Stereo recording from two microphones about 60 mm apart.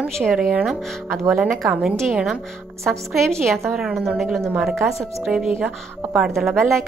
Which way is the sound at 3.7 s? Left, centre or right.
Centre.